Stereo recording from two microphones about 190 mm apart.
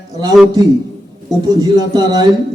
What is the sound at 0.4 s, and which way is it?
A man's voice, 20° right (ahead or behind).